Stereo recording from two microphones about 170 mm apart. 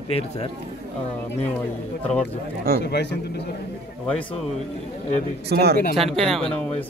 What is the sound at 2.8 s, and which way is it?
Speech, 80° left.